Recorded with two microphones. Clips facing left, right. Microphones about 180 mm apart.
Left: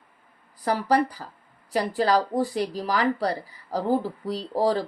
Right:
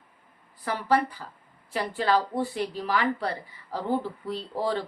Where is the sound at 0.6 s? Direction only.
40° left (ahead or behind).